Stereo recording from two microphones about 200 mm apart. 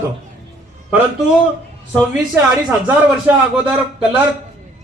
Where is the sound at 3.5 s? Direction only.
5° right (ahead or behind).